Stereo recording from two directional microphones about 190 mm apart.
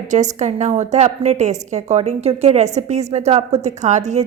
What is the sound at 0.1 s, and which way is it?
A woman's voice, 40° right (ahead or behind).